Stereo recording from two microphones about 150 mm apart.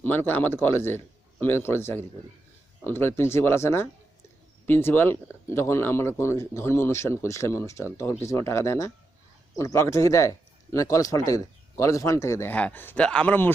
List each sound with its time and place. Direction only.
0.0 s speech: 15° left (ahead or behind)